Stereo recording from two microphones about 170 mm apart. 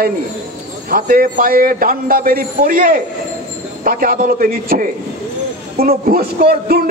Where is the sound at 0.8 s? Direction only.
55° right (ahead or behind).